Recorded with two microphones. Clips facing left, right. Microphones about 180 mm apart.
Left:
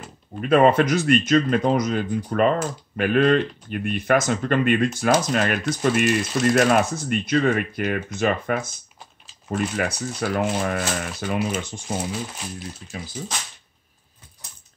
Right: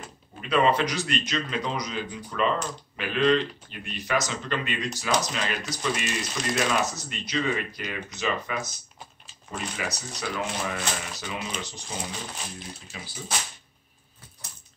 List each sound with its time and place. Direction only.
0.4 s speech: 50° left (ahead or behind)
12.4 s speech: 5° left (ahead or behind)